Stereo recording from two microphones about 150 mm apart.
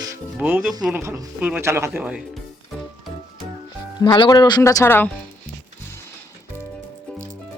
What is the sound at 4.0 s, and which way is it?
Speech, 30° left (ahead or behind).